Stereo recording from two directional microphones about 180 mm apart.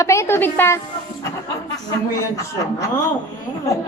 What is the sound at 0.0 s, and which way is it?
Speech, 15° left (ahead or behind).